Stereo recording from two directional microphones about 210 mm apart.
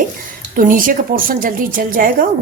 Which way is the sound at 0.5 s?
40° right (ahead or behind).